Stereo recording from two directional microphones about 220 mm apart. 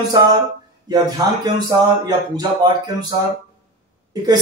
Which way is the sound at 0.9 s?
20° right (ahead or behind).